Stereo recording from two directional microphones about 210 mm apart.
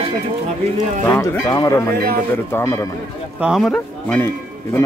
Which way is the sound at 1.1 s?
15° left (ahead or behind).